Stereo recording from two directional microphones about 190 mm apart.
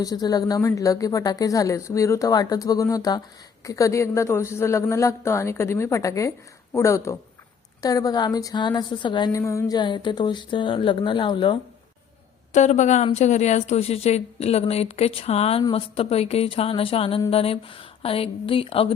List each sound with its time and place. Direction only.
0.0 s a woman's voice: 20° left (ahead or behind)
12.5 s a woman's voice: 40° left (ahead or behind)